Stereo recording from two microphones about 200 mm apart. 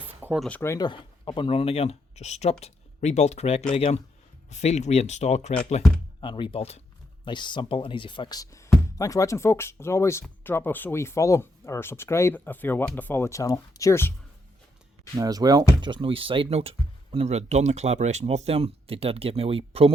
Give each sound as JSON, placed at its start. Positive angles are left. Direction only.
{"t": 0.1, "sound": "a sound", "side_deg": -10}
{"t": 0.4, "sound": "speech", "side_deg": 10}
{"t": 15.1, "sound": "speech", "side_deg": -20}